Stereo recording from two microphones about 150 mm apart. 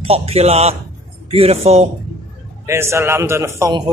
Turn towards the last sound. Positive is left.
turn(degrees=-20)  # may be behind; listen again after turning